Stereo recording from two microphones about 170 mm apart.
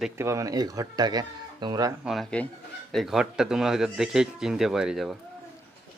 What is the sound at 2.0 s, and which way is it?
Speech, 5° left (ahead or behind).